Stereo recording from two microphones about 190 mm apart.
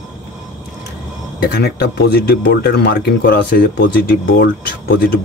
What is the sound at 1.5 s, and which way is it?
Speech, 60° left (ahead or behind).